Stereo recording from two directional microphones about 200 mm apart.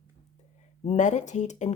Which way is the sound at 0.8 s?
35° left (ahead or behind).